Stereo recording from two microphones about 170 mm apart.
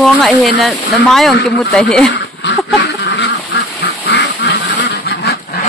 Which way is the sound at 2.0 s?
90° left.